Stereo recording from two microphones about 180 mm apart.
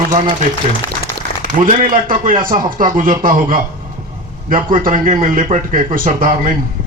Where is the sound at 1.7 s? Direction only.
45° right (ahead or behind).